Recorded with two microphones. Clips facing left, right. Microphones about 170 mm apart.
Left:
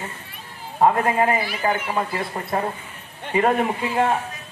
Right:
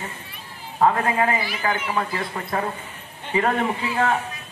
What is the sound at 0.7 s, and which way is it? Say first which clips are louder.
A man's voice: left 2 dB; 25° left (ahead or behind).